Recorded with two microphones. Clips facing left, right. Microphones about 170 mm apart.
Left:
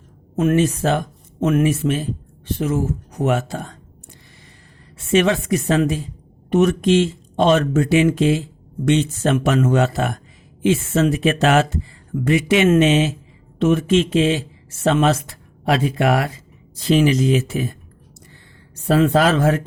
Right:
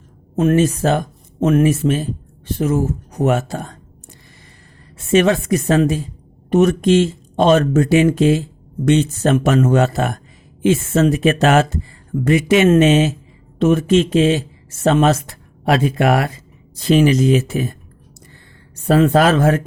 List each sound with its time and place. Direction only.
0.3 s speech: 35° right (ahead or behind)
5.1 s speech: 40° right (ahead or behind)
18.9 s speech: 50° right (ahead or behind)